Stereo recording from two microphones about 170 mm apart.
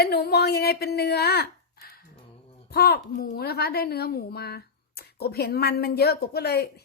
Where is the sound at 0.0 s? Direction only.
70° left (ahead or behind).